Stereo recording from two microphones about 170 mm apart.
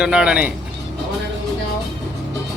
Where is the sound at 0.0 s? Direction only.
5° right (ahead or behind).